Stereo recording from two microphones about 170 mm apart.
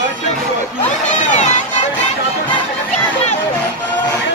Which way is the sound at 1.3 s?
45° left (ahead or behind).